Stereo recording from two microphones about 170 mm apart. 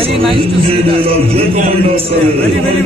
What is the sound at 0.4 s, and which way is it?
A man's voice, 35° right (ahead or behind).